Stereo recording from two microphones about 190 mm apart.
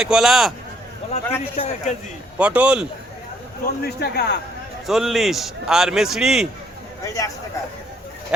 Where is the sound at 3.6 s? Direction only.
55° left (ahead or behind).